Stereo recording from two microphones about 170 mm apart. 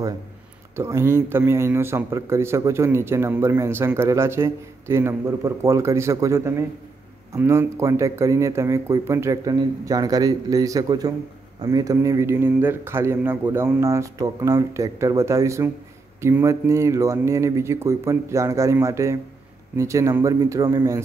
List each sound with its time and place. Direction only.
0.7 s a man's voice: 15° right (ahead or behind)